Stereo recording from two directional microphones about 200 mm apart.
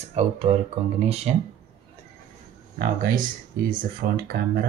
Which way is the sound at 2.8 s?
45° right (ahead or behind).